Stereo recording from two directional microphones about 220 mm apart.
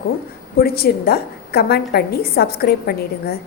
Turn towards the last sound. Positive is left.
turn(degrees=45)  # may be behind; listen again after turning